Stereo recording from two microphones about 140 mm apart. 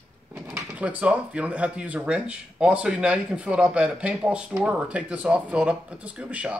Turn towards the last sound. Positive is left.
turn(degrees=-10)  # may be behind; listen again after turning